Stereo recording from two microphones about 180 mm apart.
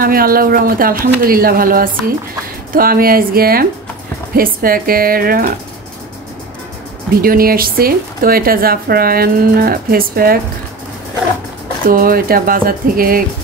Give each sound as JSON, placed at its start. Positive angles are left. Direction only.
{"t": 0.0, "sound": "speech", "side_deg": -55}
{"t": 7.2, "sound": "speech", "side_deg": -55}
{"t": 11.9, "sound": "speech", "side_deg": -55}